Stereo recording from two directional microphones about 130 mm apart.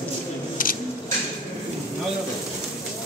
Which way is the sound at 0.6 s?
90° left.